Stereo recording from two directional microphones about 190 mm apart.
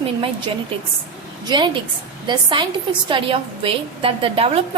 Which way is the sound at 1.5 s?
25° right (ahead or behind).